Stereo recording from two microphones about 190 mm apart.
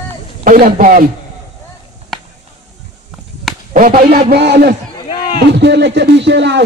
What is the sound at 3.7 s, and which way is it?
Speech, 50° right (ahead or behind).